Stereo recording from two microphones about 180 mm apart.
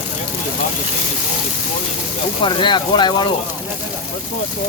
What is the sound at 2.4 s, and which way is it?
Speech, 25° left (ahead or behind).